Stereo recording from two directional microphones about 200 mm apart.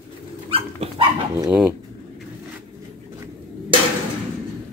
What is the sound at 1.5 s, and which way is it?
Speech, 5° right (ahead or behind).